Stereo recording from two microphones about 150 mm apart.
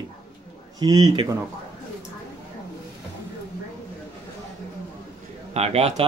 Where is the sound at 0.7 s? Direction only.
25° right (ahead or behind).